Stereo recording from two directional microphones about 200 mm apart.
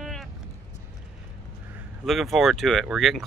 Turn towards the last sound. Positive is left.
turn(degrees=0)  # may be behind; listen again after turning